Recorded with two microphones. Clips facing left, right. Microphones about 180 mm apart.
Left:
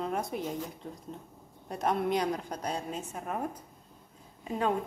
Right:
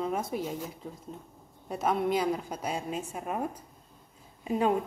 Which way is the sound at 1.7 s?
5° right (ahead or behind).